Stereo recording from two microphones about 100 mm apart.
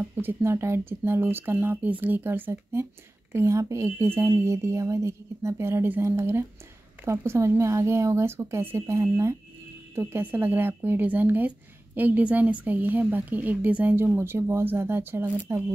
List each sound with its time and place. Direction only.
0.1 s speech: 20° right (ahead or behind)